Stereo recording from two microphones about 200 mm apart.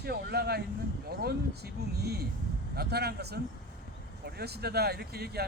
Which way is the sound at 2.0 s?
50° right (ahead or behind).